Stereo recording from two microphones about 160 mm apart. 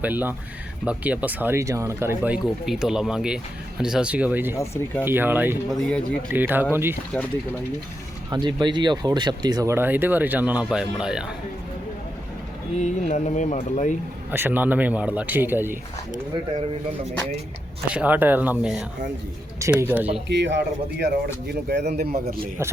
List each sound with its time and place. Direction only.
0.0 s speech: 10° right (ahead or behind)
4.5 s speech: 15° left (ahead or behind)
5.0 s speech: 15° right (ahead or behind)
5.7 s speech: 5° left (ahead or behind)
6.3 s speech: 10° right (ahead or behind)
8.3 s speech: 25° right (ahead or behind); by 11.3 s 5° right (ahead or behind)
12.8 s speech: 45° left (ahead or behind)
14.3 s speech: 15° right (ahead or behind)
17.8 s speech: 10° right (ahead or behind)
20.2 s a man's voice: 90° right